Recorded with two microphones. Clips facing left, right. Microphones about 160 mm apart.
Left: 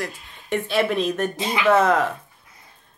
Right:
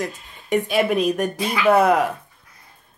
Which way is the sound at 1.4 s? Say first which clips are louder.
Right 1 dB; 25° left (ahead or behind).